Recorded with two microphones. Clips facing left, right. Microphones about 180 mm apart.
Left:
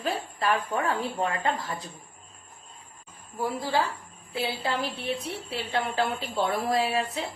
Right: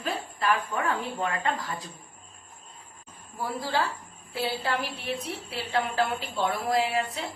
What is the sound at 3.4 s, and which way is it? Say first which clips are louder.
A woman's voice: left 2 dB; 20° left (ahead or behind).